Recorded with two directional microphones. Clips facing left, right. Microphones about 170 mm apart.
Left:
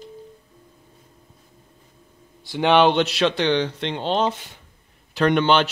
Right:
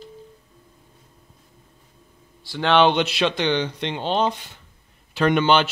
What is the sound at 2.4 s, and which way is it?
Speech, 20° left (ahead or behind).